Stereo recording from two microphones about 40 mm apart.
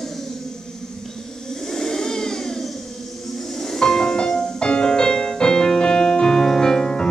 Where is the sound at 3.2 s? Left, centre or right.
Centre.